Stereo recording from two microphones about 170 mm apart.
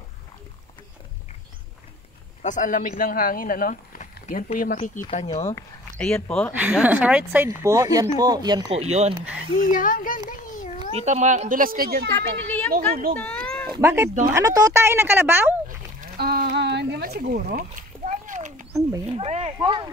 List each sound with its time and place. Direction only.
2.4 s speech: 50° left (ahead or behind)
5.1 s speech: 40° left (ahead or behind)
5.9 s speech: 5° left (ahead or behind)
6.6 s speech: 10° right (ahead or behind); by 8.7 s 25° right (ahead or behind)
8.7 s speech: 40° right (ahead or behind)
9.6 s a sound: 55° left (ahead or behind)
11.0 s a woman's voice: 40° right (ahead or behind); by 12.1 s 65° right (ahead or behind)
12.1 s speech: 15° left (ahead or behind)
13.5 s cat: 5° left (ahead or behind)
13.7 s speech: 15° right (ahead or behind)
16.2 s a sound: 65° right (ahead or behind); by 18.8 s 50° right (ahead or behind)
19.1 s speech: 35° right (ahead or behind)